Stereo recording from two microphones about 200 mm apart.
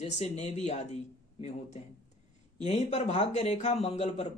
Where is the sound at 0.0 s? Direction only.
35° left (ahead or behind).